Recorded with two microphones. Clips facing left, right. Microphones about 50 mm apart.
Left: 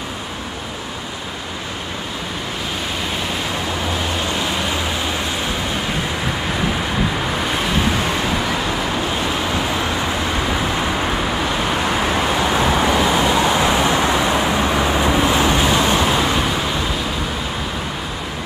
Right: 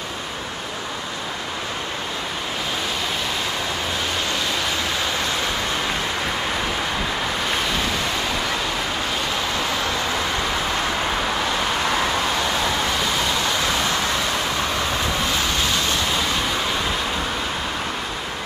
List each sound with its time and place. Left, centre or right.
10.4 s vehicle: centre